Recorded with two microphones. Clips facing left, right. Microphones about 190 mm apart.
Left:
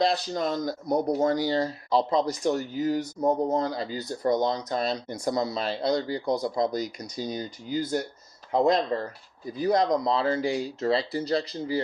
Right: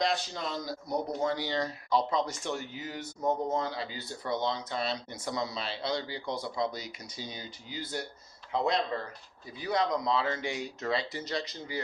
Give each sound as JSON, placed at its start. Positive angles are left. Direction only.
{"t": 0.0, "sound": "speech", "side_deg": 40}